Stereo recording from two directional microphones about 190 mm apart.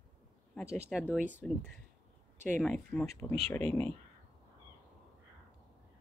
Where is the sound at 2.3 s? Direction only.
40° right (ahead or behind).